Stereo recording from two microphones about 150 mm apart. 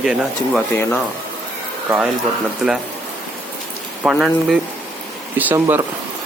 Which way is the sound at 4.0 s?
5° right (ahead or behind).